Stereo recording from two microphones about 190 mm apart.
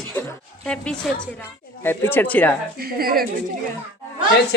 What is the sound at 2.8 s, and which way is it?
Speech, 50° right (ahead or behind).